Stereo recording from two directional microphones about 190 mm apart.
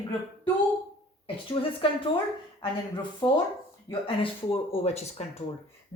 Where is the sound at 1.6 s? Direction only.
30° left (ahead or behind).